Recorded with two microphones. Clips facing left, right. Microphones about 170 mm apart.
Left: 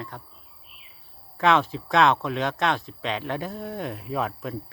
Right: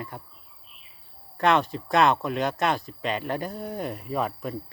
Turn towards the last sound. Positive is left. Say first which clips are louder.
# even
turn(degrees=0)  # may be behind; listen again after turning